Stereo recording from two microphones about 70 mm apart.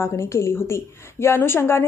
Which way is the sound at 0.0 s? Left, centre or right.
Left.